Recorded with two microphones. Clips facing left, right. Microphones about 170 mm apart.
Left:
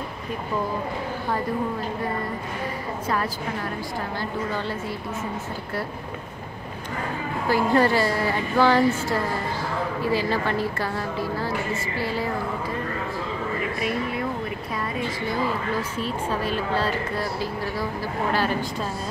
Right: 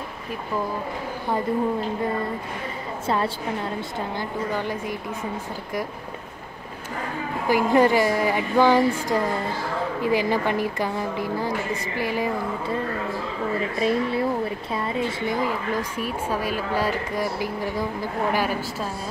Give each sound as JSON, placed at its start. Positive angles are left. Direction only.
{"t": 3.1, "sound": "a woman's voice", "side_deg": -25}
{"t": 4.2, "sound": "speech", "side_deg": -15}
{"t": 7.4, "sound": "speech", "side_deg": -15}
{"t": 13.7, "sound": "a woman's voice", "side_deg": -30}
{"t": 16.0, "sound": "speech", "side_deg": -10}